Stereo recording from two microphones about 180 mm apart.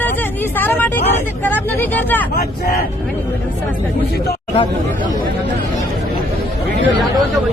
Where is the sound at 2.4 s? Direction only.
60° left (ahead or behind).